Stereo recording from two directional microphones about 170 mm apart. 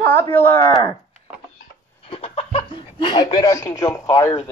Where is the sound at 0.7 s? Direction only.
25° left (ahead or behind).